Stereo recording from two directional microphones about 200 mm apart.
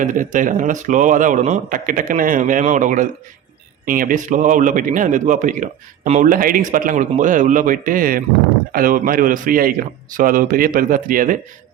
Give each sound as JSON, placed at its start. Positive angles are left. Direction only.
{"t": 0.0, "sound": "a man's voice", "side_deg": -40}